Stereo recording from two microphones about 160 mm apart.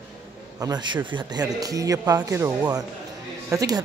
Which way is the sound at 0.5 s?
25° right (ahead or behind).